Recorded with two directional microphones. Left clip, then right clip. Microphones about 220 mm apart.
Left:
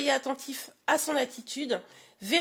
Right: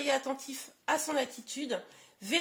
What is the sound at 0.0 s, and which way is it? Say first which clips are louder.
Speech: left 3 dB; 45° left (ahead or behind).